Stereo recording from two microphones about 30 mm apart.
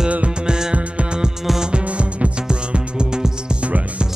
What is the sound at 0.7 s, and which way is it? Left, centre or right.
Music, right.